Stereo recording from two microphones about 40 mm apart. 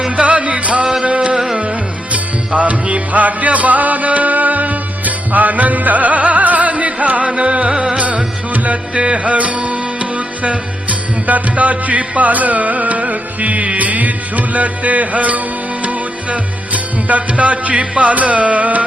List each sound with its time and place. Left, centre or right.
0.2 s music: right
2.1 s music: right
7.3 s music: right